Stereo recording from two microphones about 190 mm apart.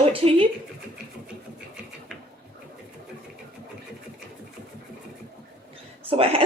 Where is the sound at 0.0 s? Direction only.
30° right (ahead or behind).